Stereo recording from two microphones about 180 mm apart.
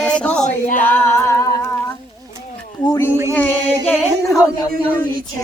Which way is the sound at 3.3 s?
10° left (ahead or behind).